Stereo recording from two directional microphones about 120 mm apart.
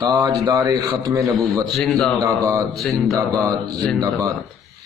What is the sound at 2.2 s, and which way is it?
Speech, 25° right (ahead or behind).